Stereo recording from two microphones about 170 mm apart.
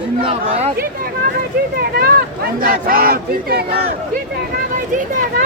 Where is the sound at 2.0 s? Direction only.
60° right (ahead or behind).